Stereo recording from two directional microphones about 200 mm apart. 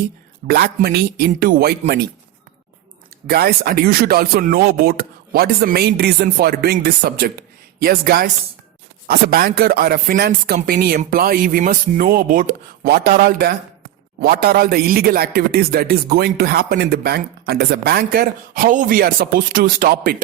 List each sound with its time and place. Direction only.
0.4 s speech: 50° right (ahead or behind)
3.2 s speech: 50° right (ahead or behind)